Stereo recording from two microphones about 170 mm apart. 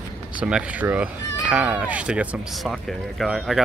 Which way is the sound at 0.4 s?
5° right (ahead or behind).